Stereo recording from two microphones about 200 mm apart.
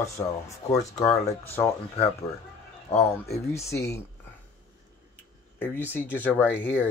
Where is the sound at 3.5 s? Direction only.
15° left (ahead or behind).